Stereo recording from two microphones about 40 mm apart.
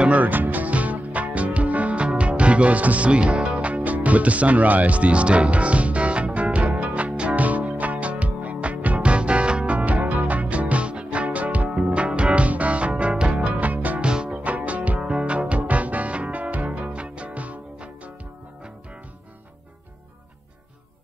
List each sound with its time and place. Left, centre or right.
0.1 s music: right
3.6 s music: right
9.8 s music: right
11.8 s music: right
14.0 s music: right